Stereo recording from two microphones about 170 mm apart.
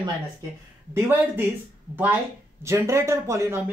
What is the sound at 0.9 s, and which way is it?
Speech, 10° right (ahead or behind).